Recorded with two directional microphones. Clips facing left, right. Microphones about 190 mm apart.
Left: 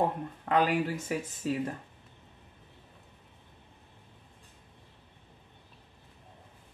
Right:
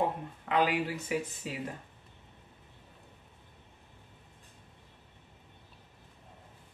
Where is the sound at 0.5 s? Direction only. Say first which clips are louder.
Left 2 dB; 45° left (ahead or behind).